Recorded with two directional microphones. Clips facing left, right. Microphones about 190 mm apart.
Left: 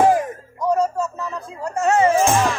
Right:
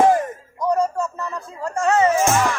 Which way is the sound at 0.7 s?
5° left (ahead or behind).